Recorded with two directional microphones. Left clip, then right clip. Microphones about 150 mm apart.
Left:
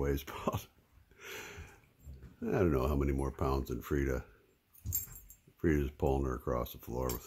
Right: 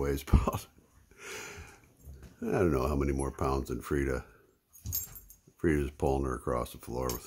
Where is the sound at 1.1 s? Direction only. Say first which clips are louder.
Right 3 dB; 5° left (ahead or behind).